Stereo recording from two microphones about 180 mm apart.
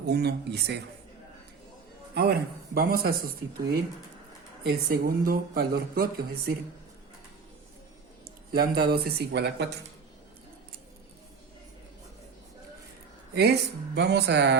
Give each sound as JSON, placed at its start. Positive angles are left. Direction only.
{"t": 0.0, "sound": "speech", "side_deg": -65}
{"t": 2.1, "sound": "speech", "side_deg": -60}
{"t": 4.6, "sound": "speech", "side_deg": -55}
{"t": 8.5, "sound": "speech", "side_deg": -60}
{"t": 13.3, "sound": "speech", "side_deg": -65}